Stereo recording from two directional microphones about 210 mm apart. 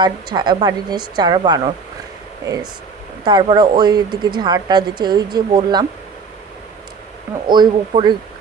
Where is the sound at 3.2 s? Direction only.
20° right (ahead or behind).